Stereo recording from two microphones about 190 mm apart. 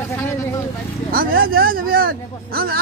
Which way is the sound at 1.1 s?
50° right (ahead or behind).